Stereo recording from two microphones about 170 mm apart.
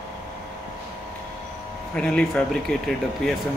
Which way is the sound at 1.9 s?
5° left (ahead or behind).